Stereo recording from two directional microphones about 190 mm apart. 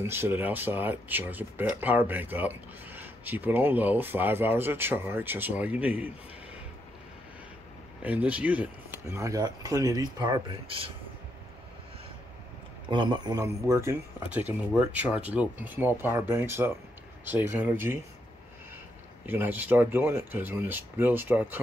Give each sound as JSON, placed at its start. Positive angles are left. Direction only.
{"t": 0.0, "sound": "speech", "side_deg": -10}
{"t": 8.0, "sound": "speech", "side_deg": -10}
{"t": 12.8, "sound": "a man's voice", "side_deg": -25}
{"t": 19.2, "sound": "speech", "side_deg": -10}